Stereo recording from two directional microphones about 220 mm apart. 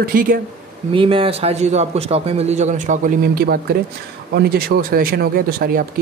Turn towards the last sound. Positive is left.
turn(degrees=-40)  # may be behind; listen again after turning